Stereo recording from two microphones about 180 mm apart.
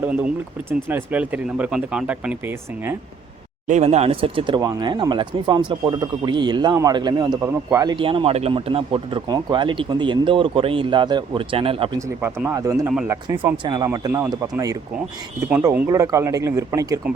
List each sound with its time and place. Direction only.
0.0 s speech: 5° right (ahead or behind)
3.7 s speech: 40° right (ahead or behind)
11.9 s speech: 15° right (ahead or behind)